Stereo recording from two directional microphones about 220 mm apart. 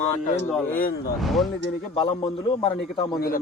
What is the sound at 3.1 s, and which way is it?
Speech, 40° left (ahead or behind).